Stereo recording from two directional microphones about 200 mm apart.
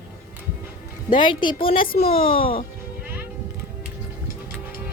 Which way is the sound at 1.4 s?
25° left (ahead or behind).